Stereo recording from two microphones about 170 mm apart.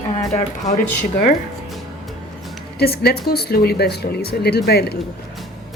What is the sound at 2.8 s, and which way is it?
Speech, 70° left (ahead or behind).